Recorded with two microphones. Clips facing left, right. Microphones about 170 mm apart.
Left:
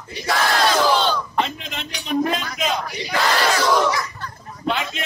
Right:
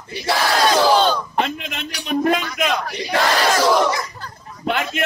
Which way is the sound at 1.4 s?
60° right (ahead or behind).